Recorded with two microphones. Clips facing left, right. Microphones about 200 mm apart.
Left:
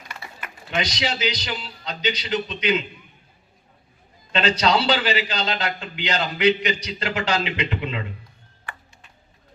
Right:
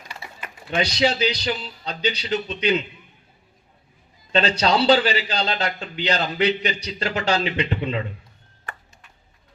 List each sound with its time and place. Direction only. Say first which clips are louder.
0.2 s speech: even; 30° right (ahead or behind)
4.4 s a man's voice: right 1 dB; 35° right (ahead or behind)